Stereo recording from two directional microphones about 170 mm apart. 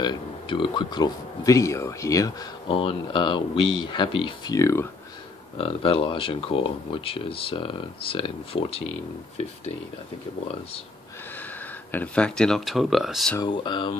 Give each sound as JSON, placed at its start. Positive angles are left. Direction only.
{"t": 0.0, "sound": "speech", "side_deg": 30}
{"t": 2.7, "sound": "speech", "side_deg": 30}
{"t": 4.6, "sound": "speech", "side_deg": 20}
{"t": 5.6, "sound": "speech", "side_deg": 35}
{"t": 11.9, "sound": "speech", "side_deg": 10}
{"t": 13.4, "sound": "speech", "side_deg": 25}